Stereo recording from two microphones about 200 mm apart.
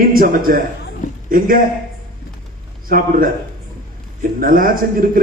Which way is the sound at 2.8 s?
45° right (ahead or behind).